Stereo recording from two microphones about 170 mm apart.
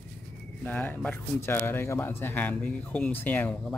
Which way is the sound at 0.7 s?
10° left (ahead or behind).